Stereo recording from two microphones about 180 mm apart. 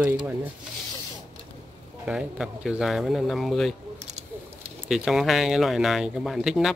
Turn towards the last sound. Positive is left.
turn(degrees=0)  # may be behind; listen again after turning